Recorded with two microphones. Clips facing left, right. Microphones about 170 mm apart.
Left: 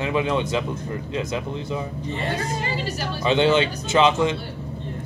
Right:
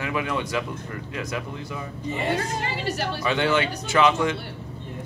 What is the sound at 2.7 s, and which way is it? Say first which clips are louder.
Speech: even; 65° right (ahead or behind).